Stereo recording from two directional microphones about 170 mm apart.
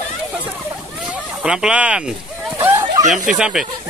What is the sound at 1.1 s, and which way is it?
Speech, 5° right (ahead or behind).